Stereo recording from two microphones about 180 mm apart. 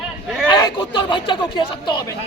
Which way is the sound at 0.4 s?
25° left (ahead or behind).